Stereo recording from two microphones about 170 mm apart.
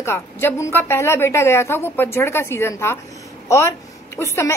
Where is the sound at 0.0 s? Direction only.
15° left (ahead or behind).